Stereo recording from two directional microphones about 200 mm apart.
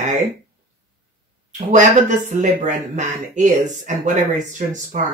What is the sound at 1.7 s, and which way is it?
Speech, 40° right (ahead or behind).